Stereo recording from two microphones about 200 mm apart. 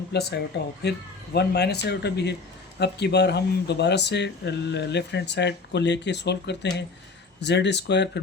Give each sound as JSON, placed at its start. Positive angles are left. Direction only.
{"t": 0.1, "sound": "speech", "side_deg": 55}